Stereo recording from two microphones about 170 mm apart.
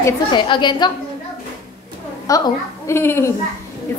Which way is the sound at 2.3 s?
20° left (ahead or behind).